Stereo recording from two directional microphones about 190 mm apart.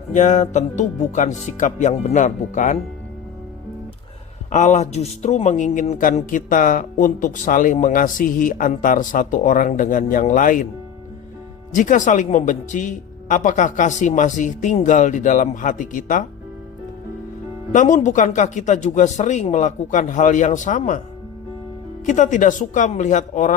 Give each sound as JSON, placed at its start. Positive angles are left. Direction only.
{"t": 0.1, "sound": "speech", "side_deg": 40}
{"t": 4.4, "sound": "a man's voice", "side_deg": 40}
{"t": 11.7, "sound": "speech", "side_deg": 45}
{"t": 17.7, "sound": "speech", "side_deg": 40}
{"t": 22.0, "sound": "speech", "side_deg": 40}